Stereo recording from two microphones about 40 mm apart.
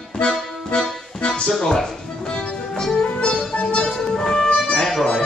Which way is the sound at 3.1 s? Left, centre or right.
Left.